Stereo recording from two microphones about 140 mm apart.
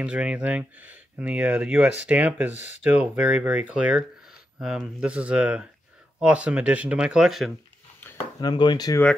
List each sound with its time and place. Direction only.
0.0 s speech: 10° right (ahead or behind)
8.4 s speech: 30° left (ahead or behind)